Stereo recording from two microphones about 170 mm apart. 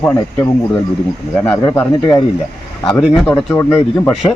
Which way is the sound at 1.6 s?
15° left (ahead or behind).